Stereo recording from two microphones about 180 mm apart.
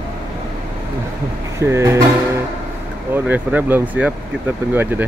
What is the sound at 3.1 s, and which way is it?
Speech, 10° right (ahead or behind).